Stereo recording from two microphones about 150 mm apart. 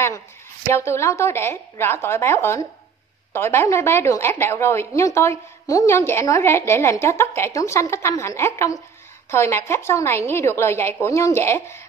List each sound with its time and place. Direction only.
0.7 s a woman's voice: 15° left (ahead or behind)